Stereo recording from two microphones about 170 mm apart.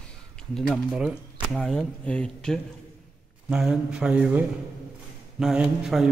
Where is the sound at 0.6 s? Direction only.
Centre (ahead or behind).